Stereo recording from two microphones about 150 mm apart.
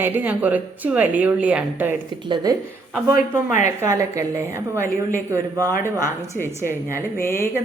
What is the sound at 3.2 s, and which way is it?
Speech, 55° left (ahead or behind).